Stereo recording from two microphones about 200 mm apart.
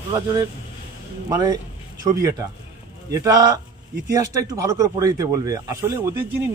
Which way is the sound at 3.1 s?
15° right (ahead or behind).